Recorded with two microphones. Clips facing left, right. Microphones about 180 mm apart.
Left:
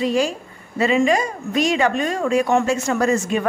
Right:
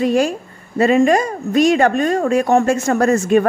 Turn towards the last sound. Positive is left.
turn(degrees=-50)  # may be behind; listen again after turning